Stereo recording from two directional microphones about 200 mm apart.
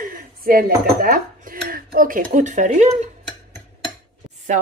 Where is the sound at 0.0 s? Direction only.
45° right (ahead or behind).